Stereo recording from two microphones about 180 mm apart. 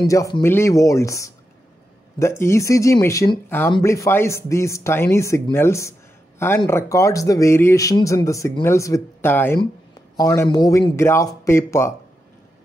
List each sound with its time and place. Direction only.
0.0 s speech: 15° left (ahead or behind)